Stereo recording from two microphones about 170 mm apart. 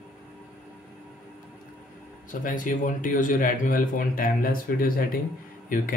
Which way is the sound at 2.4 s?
50° left (ahead or behind).